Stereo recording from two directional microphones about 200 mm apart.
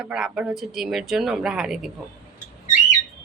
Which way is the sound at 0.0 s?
5° right (ahead or behind).